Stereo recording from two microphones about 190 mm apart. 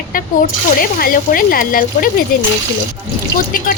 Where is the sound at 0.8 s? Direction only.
50° left (ahead or behind).